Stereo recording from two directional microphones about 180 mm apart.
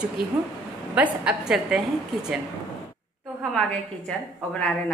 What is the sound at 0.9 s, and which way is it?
Speech, 5° right (ahead or behind).